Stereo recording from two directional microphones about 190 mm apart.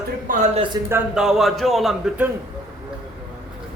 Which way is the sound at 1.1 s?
Centre (ahead or behind).